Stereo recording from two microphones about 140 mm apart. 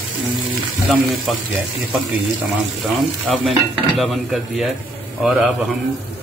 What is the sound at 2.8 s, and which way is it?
Stir, centre (ahead or behind).